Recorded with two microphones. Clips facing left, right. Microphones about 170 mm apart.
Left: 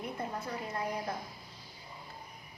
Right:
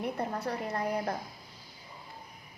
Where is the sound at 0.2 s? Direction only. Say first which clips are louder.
Right 4 dB; 70° right (ahead or behind).